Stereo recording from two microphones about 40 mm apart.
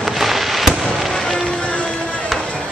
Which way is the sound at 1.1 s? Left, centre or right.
Centre.